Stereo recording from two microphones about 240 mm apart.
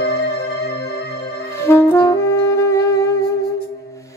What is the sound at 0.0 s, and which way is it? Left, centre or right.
Music, left.